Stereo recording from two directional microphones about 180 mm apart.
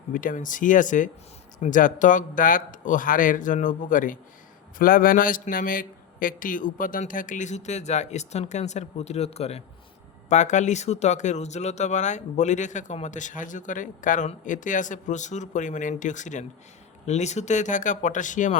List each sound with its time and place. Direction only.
0.1 s a man's voice: 50° left (ahead or behind)